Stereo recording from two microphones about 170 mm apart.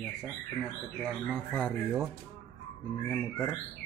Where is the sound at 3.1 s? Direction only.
10° left (ahead or behind).